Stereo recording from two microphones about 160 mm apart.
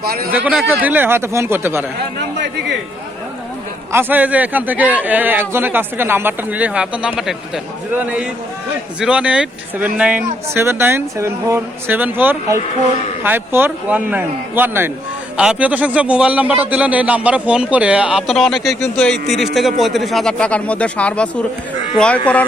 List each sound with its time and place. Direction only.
0.0 s speech: 70° right (ahead or behind)
0.3 s a man's voice: 10° right (ahead or behind)
3.9 s a man's voice: 10° right (ahead or behind); by 22.2 s 5° left (ahead or behind)